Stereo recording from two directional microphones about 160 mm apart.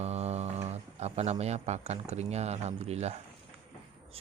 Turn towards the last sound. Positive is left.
turn(degrees=-40)  # may be behind; listen again after turning